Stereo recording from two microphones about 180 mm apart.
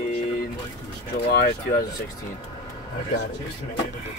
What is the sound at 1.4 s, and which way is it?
Speech, 55° left (ahead or behind).